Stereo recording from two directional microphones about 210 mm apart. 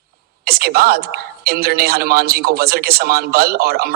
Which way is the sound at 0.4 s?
45° right (ahead or behind).